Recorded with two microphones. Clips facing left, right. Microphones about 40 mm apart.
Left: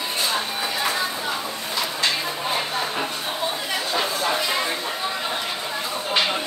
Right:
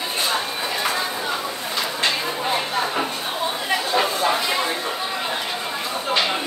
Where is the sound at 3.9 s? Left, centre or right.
Centre.